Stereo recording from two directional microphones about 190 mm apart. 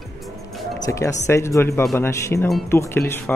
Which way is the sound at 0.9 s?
15° left (ahead or behind).